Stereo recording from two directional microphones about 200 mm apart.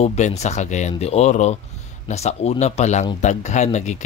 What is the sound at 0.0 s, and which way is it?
Speech, 35° left (ahead or behind).